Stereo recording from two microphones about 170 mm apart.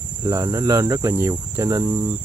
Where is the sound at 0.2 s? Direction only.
20° right (ahead or behind).